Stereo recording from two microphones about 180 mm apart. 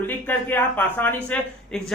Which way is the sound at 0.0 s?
10° left (ahead or behind).